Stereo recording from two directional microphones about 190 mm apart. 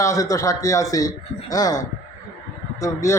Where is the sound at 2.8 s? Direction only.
15° left (ahead or behind).